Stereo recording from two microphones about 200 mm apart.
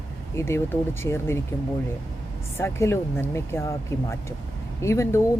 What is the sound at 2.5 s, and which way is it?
Speech, 15° left (ahead or behind).